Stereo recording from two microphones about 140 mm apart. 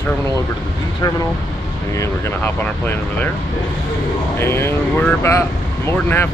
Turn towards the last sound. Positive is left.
turn(degrees=15)  # may be behind; listen again after turning